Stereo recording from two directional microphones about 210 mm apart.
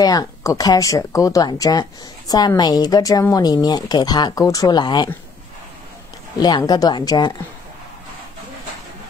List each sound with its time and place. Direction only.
0.0 s speech: 15° left (ahead or behind)
6.4 s a woman's voice: 20° left (ahead or behind)